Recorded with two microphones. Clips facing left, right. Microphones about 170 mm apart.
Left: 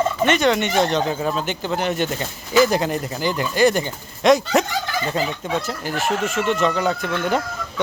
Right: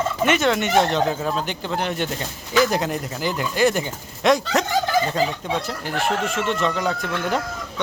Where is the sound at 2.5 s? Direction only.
Centre (ahead or behind).